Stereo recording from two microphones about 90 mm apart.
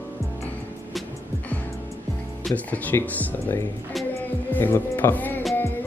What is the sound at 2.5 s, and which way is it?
Speech, 20° left (ahead or behind).